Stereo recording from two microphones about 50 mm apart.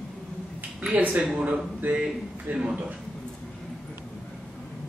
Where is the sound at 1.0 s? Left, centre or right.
Right.